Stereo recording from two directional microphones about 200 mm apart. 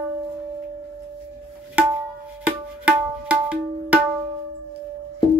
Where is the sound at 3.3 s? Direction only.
5° right (ahead or behind).